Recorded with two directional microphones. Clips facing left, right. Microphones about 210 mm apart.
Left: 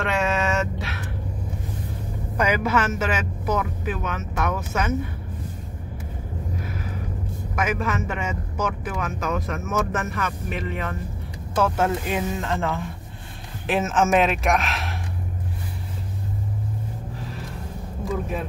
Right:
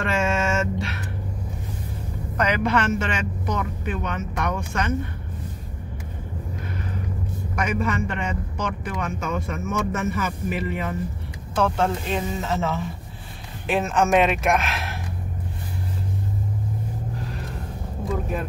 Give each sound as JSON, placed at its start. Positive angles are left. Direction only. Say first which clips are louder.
{"t": 0.0, "sound": "a sound", "louder": "even", "side_deg": 0}
{"t": 2.3, "sound": "a man's voice", "louder": "even", "side_deg": 10}
{"t": 7.5, "sound": "a man's voice", "louder": "even", "side_deg": 0}